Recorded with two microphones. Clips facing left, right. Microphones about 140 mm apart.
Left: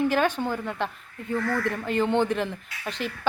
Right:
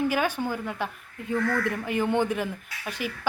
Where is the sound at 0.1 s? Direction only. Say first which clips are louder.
Left 2 dB; 10° right (ahead or behind).